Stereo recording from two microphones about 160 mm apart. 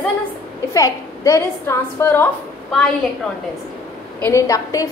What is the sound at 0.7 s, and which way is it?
A woman's voice, 20° left (ahead or behind).